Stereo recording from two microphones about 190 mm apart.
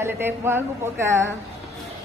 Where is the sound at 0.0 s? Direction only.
10° right (ahead or behind).